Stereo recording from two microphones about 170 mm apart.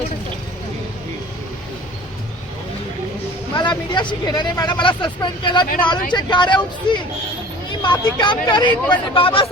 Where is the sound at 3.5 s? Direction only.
25° left (ahead or behind).